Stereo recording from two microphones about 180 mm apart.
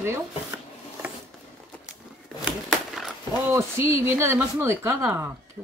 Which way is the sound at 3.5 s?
15° right (ahead or behind).